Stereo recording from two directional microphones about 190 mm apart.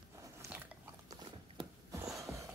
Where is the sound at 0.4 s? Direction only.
10° right (ahead or behind).